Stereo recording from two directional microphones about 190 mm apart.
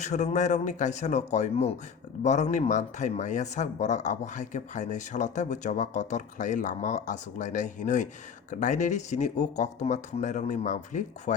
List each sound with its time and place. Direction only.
0.0 s speech: 40° left (ahead or behind)